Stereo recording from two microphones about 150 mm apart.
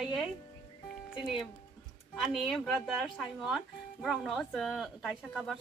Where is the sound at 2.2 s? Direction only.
Centre (ahead or behind).